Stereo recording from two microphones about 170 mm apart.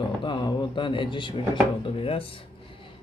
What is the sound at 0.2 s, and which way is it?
Speech, 25° left (ahead or behind).